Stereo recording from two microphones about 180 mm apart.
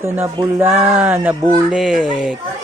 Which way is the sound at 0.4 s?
15° right (ahead or behind).